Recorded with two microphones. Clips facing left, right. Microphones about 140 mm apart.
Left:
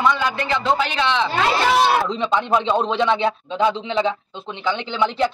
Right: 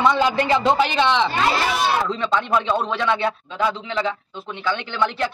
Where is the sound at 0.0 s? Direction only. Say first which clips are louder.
Right 2 dB; 25° right (ahead or behind).